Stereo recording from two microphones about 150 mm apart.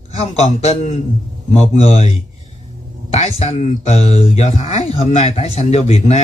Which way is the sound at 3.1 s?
45° left (ahead or behind).